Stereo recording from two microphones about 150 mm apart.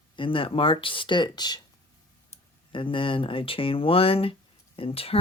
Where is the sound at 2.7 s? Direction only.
35° left (ahead or behind).